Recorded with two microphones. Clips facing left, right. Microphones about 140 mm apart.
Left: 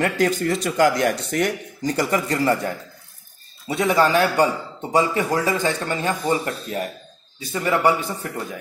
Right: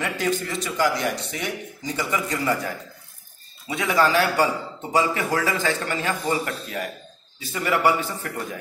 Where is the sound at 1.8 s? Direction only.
45° left (ahead or behind).